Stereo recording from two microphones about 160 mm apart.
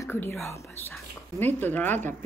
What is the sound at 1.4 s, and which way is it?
Speech, 10° left (ahead or behind).